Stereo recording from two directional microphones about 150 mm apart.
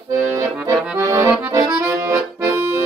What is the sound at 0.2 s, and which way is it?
Accordion, 20° right (ahead or behind).